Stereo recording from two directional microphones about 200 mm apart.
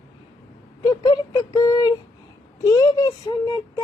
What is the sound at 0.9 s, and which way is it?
Speech, 20° left (ahead or behind).